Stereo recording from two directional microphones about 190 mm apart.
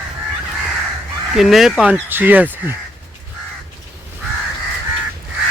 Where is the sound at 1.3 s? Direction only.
Centre (ahead or behind).